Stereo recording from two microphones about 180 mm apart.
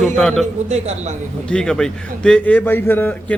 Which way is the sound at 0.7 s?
40° right (ahead or behind).